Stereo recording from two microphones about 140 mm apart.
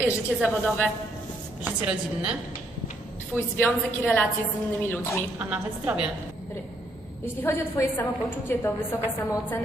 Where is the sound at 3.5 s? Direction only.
15° left (ahead or behind).